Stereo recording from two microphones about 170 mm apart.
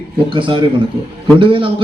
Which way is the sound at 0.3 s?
30° right (ahead or behind).